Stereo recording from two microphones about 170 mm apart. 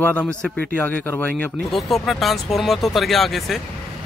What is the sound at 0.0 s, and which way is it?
Speech, 10° left (ahead or behind).